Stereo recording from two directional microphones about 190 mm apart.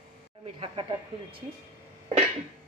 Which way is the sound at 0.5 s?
30° right (ahead or behind).